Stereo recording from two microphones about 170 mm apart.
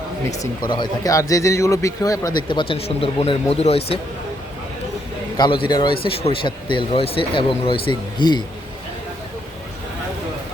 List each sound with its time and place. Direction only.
0.3 s speech: 25° left (ahead or behind)
5.4 s speech: 30° left (ahead or behind)